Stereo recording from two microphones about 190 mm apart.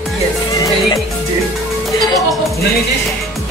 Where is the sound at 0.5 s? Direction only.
15° left (ahead or behind).